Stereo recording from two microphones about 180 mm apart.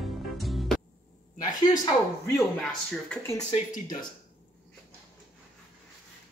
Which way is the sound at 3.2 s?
15° left (ahead or behind).